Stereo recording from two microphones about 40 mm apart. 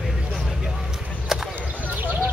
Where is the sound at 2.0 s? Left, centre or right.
Right.